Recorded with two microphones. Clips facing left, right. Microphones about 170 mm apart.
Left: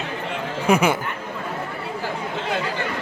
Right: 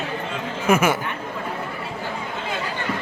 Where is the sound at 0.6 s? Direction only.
15° left (ahead or behind).